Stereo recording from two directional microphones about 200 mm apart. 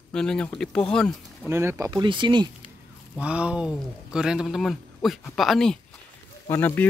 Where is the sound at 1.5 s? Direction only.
15° right (ahead or behind).